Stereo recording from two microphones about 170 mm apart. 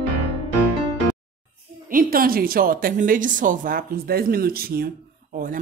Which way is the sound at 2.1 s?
60° right (ahead or behind).